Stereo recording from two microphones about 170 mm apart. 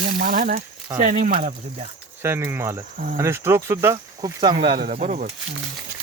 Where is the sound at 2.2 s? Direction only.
15° right (ahead or behind).